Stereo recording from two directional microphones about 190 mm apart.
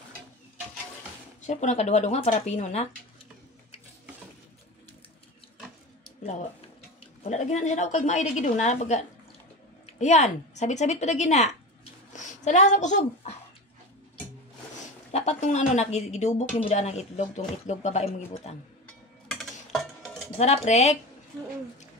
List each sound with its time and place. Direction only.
1.4 s speech: 40° left (ahead or behind)
7.2 s speech: 40° left (ahead or behind)
15.0 s speech: 35° left (ahead or behind)
19.2 s a sound: centre (ahead or behind)
20.3 s speech: 35° left (ahead or behind)